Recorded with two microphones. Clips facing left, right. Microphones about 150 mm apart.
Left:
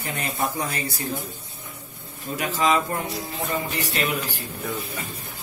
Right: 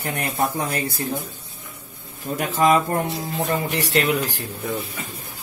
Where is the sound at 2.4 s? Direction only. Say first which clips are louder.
Right 4 dB; 50° right (ahead or behind).